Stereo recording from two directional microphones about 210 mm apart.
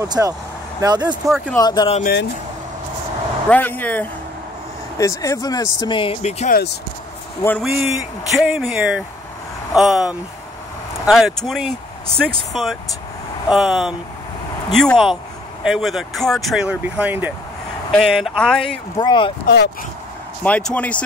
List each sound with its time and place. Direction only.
0.0 s speech: 15° right (ahead or behind)
1.6 s speech: 20° left (ahead or behind)
3.4 s speech: 10° left (ahead or behind); by 6.6 s 35° left (ahead or behind)
7.4 s speech: 5° left (ahead or behind)
7.7 s speech: 10° right (ahead or behind)
13.5 s speech: centre (ahead or behind)
18.9 s speech: 20° left (ahead or behind)
19.4 s speech: 50° left (ahead or behind)
20.4 s speech: 5° left (ahead or behind)